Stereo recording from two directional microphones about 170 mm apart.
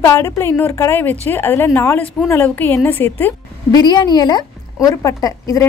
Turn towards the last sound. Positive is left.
turn(degrees=20)  # may be behind; listen again after turning